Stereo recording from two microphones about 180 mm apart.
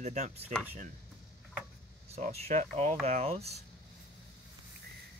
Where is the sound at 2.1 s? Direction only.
45° right (ahead or behind).